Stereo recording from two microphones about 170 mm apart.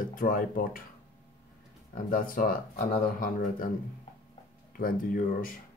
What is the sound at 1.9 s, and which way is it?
Speech, 55° left (ahead or behind).